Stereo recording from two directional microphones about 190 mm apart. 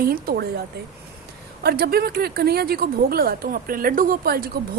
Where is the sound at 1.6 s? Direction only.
55° right (ahead or behind).